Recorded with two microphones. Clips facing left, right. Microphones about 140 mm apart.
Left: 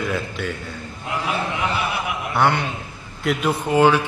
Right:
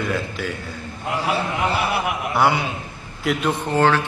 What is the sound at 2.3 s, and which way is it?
Speech, 5° right (ahead or behind).